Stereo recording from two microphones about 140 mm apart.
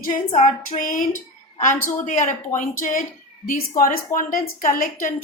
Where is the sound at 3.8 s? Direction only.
80° left.